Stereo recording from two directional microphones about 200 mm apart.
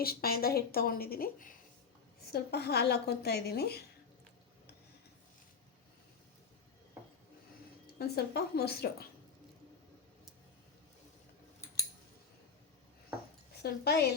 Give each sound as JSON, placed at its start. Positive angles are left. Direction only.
{"t": 0.0, "sound": "a woman's voice", "side_deg": 50}
{"t": 7.9, "sound": "a woman's voice", "side_deg": 50}
{"t": 13.6, "sound": "a woman's voice", "side_deg": 55}